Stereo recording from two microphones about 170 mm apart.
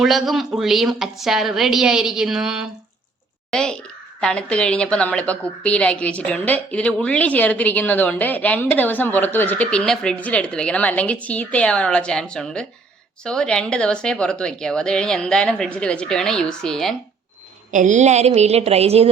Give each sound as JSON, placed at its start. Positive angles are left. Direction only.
{"t": 0.0, "sound": "a woman's voice", "side_deg": 0}
{"t": 17.7, "sound": "a woman's voice", "side_deg": -45}